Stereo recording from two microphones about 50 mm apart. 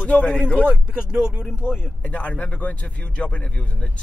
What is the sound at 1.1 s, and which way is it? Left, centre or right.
Speech, centre.